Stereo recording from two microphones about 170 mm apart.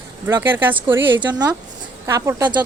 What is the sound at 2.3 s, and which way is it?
Speech, 20° right (ahead or behind).